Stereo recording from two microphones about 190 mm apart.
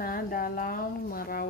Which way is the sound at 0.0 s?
50° left (ahead or behind).